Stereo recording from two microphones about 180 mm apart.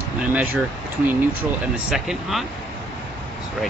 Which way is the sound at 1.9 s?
Centre (ahead or behind).